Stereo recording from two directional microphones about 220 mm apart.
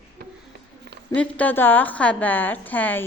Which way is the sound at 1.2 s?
5° left (ahead or behind).